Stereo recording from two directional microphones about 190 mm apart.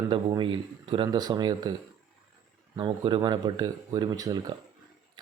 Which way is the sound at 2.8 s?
25° right (ahead or behind).